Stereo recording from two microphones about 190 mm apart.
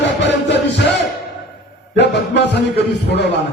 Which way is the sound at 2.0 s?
65° left (ahead or behind).